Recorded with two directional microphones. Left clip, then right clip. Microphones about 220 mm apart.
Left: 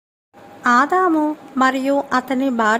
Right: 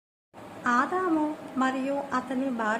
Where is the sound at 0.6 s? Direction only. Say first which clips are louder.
Left 11 dB; 40° left (ahead or behind).